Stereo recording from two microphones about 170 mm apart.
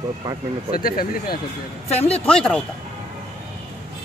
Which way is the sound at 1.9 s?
35° left (ahead or behind).